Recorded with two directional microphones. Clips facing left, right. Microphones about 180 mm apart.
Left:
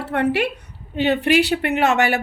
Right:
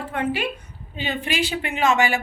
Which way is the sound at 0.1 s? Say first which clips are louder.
Left 6 dB; 70° left (ahead or behind).